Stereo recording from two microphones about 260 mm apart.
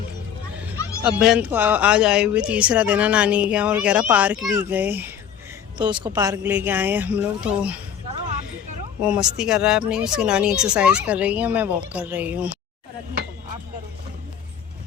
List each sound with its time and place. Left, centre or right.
1.0 s speech: centre
5.7 s speech: centre
9.0 s speech: centre